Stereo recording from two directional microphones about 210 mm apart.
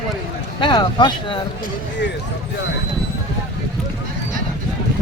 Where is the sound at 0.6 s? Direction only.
20° left (ahead or behind).